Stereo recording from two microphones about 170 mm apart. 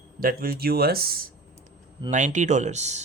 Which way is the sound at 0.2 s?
55° right (ahead or behind).